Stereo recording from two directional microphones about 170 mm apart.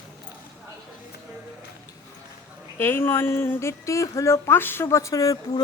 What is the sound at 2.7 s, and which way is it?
A woman's voice, 10° left (ahead or behind).